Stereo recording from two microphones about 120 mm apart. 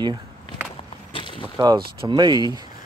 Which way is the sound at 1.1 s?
45° left (ahead or behind).